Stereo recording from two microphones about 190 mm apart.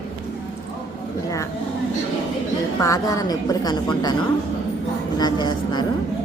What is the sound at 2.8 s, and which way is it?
A woman's voice, 15° left (ahead or behind).